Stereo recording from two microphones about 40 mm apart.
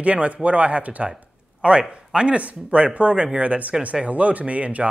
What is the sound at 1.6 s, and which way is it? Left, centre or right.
Speech, right.